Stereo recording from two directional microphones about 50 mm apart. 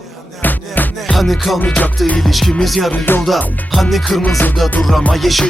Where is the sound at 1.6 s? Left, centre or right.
Left.